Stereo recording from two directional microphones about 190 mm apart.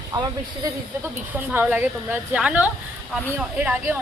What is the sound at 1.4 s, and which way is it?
Speech, 10° right (ahead or behind).